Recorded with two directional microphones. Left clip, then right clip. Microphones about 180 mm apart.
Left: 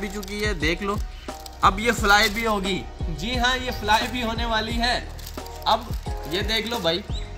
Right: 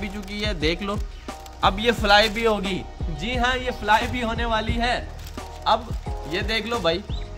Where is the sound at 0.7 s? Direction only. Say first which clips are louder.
Even; 70° right (ahead or behind).